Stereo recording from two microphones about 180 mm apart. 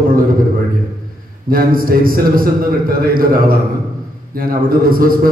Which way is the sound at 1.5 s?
50° right (ahead or behind).